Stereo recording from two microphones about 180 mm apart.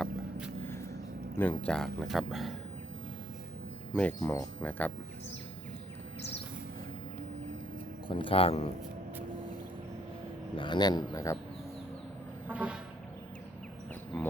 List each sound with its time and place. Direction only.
0.0 s vehicle: 5° right (ahead or behind)
1.4 s speech: 10° left (ahead or behind)
3.9 s speech: 10° left (ahead or behind)
8.0 s speech: 30° left (ahead or behind)
10.6 s speech: 25° left (ahead or behind)
12.5 s a sound: 5° right (ahead or behind)